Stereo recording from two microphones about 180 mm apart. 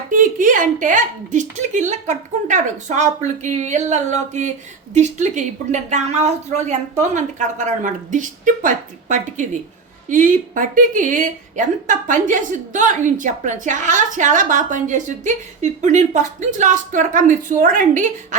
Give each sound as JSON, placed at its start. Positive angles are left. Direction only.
{"t": 0.1, "sound": "a woman's voice", "side_deg": -45}